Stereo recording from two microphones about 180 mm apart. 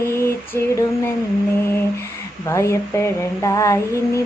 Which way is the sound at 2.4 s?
15° left (ahead or behind).